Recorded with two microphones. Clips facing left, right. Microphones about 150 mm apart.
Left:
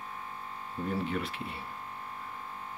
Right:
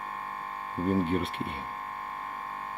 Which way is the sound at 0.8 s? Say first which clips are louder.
Right 6 dB; 50° right (ahead or behind).